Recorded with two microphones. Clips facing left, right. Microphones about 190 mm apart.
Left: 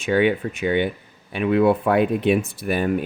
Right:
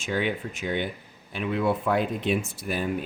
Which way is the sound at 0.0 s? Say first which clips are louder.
Left 9 dB; 60° left (ahead or behind).